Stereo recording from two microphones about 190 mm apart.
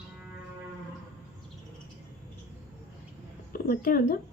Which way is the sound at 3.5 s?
50° left (ahead or behind).